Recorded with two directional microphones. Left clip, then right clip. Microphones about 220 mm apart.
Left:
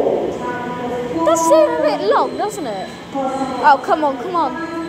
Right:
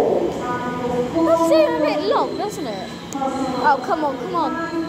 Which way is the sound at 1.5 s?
15° left (ahead or behind).